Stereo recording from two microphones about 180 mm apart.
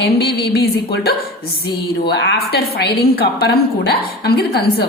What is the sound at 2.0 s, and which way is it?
A woman's voice, 70° left (ahead or behind).